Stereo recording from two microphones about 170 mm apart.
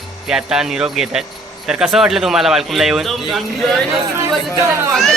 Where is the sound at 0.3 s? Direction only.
5° right (ahead or behind).